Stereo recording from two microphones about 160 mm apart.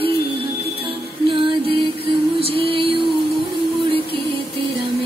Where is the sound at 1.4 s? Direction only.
35° right (ahead or behind).